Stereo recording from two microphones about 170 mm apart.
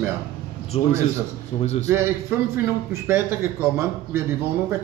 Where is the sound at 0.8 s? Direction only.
35° left (ahead or behind).